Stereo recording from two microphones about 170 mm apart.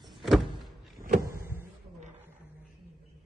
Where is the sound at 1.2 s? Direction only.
15° right (ahead or behind).